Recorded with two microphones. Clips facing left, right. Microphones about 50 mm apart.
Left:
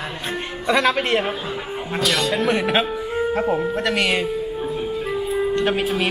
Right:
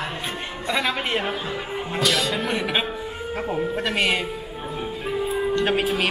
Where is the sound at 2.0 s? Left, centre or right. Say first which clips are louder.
Left 2 dB; centre.